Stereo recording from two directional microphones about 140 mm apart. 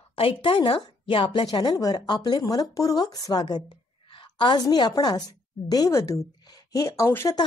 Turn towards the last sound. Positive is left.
turn(degrees=20)  # may be behind; listen again after turning